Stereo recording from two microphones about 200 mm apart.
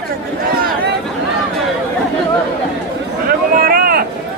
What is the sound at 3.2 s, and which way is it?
Vehicle, 45° right (ahead or behind).